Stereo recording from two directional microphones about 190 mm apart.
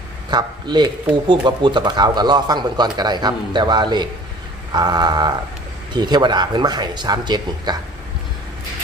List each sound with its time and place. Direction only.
0.3 s speech: 25° right (ahead or behind)